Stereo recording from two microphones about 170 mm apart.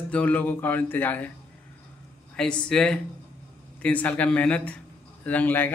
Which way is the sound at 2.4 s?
5° left (ahead or behind).